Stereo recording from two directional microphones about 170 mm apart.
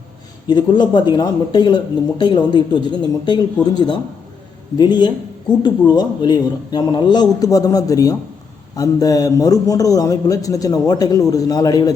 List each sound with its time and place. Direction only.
0.4 s a man's voice: 25° left (ahead or behind)